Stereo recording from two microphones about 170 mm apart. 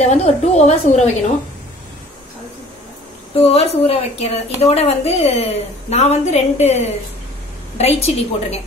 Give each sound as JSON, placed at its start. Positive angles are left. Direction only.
{"t": 0.0, "sound": "a woman's voice", "side_deg": 40}
{"t": 3.3, "sound": "a woman's voice", "side_deg": 40}